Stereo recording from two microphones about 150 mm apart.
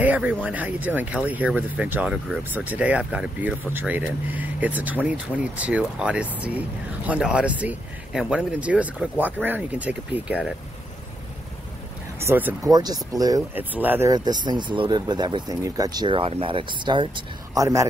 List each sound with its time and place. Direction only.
0.0 s speech: 10° right (ahead or behind)
12.2 s speech: 15° right (ahead or behind)
12.6 s speech: 25° right (ahead or behind)
13.6 s speech: 10° right (ahead or behind)
14.1 s speech: 30° right (ahead or behind)